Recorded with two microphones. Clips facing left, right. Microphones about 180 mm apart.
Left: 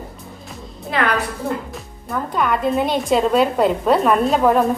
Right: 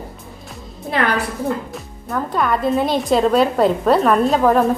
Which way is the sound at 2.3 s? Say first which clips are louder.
Right 1 dB; centre (ahead or behind).